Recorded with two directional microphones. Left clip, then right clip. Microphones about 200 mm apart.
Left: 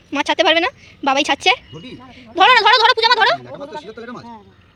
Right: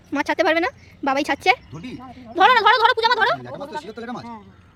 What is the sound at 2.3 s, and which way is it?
A woman's voice, centre (ahead or behind).